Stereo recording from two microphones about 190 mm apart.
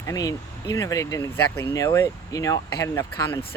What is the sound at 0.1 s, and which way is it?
Speech, 20° left (ahead or behind).